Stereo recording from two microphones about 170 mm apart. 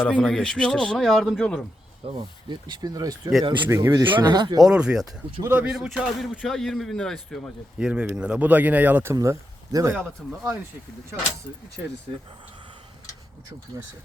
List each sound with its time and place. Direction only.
0.0 s a man's voice: 5° left (ahead or behind)
2.0 s speech: 35° right (ahead or behind)
3.7 s speech: 15° right (ahead or behind)
4.6 s a man's voice: 5° right (ahead or behind)